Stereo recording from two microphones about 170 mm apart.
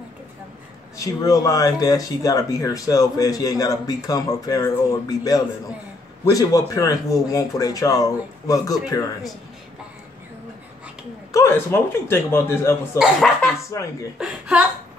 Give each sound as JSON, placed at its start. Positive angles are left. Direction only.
{"t": 0.9, "sound": "speech", "side_deg": 20}
{"t": 11.3, "sound": "speech", "side_deg": 15}
{"t": 14.1, "sound": "speech", "side_deg": -5}